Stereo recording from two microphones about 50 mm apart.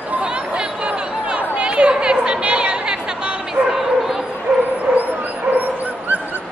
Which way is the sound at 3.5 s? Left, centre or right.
Centre.